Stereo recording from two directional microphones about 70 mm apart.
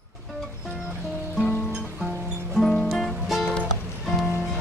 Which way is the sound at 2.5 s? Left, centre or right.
Centre.